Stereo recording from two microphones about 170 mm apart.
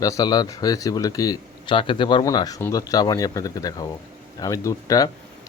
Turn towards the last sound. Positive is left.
turn(degrees=20)  # may be behind; listen again after turning